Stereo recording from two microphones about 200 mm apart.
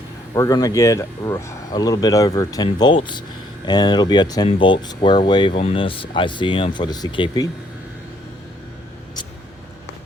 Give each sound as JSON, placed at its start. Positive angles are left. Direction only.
{"t": 0.3, "sound": "speech", "side_deg": 20}